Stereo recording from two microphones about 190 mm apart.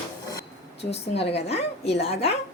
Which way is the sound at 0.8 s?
30° left (ahead or behind).